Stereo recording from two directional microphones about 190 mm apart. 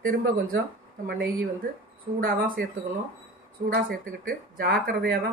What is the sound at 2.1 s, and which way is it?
Speech, 50° right (ahead or behind).